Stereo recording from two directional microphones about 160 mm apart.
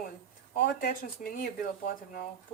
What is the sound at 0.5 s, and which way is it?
Speech, 65° left (ahead or behind).